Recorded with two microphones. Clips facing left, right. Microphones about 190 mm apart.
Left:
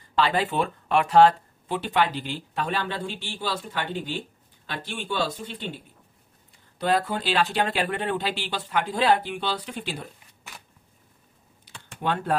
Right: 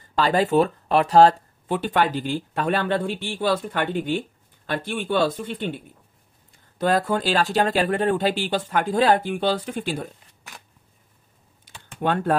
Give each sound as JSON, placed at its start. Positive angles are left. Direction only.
{"t": 0.1, "sound": "speech", "side_deg": -45}
{"t": 6.8, "sound": "speech", "side_deg": -45}
{"t": 11.6, "sound": "typing", "side_deg": -50}